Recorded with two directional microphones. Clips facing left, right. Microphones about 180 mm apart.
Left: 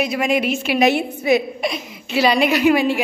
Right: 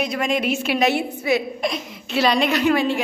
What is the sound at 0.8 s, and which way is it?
Speech, 15° left (ahead or behind).